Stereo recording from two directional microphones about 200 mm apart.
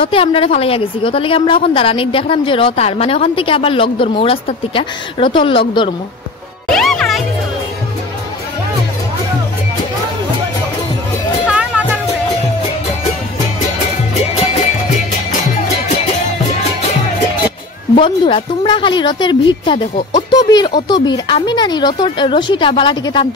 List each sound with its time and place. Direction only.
0.0 s a woman's voice: 25° left (ahead or behind)
6.7 s music: centre (ahead or behind)
11.4 s music: 5° right (ahead or behind)
17.9 s a woman's voice: 25° left (ahead or behind)